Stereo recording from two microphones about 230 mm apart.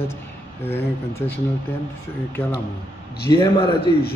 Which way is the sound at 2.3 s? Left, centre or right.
Centre.